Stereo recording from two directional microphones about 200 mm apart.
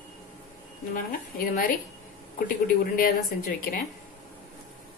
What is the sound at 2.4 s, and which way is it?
A woman's voice, 45° left (ahead or behind).